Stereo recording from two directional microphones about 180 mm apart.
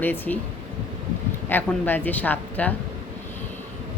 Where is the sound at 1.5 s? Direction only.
10° left (ahead or behind).